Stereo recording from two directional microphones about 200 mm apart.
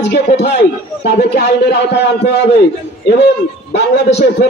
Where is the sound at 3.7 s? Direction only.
55° left (ahead or behind).